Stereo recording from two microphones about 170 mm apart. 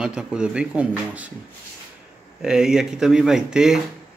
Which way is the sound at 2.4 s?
5° right (ahead or behind).